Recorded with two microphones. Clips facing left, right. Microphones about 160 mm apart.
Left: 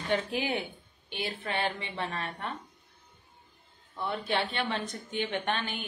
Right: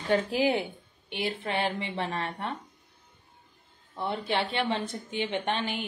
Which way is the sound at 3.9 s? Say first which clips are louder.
Right 2 dB; 25° right (ahead or behind).